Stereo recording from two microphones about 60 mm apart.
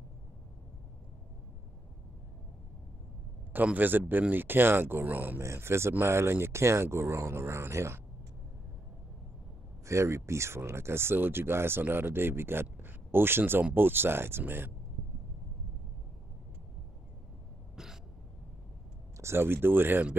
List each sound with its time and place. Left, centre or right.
3.5 s speech: right
5.4 s speech: right
9.8 s speech: right
19.1 s speech: right